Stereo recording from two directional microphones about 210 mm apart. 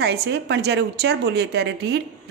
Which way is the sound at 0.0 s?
50° right (ahead or behind).